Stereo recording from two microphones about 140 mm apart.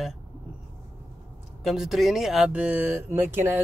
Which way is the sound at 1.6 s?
Centre (ahead or behind).